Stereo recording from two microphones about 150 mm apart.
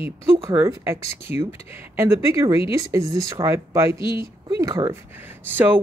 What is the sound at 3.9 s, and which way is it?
Speech, 35° left (ahead or behind).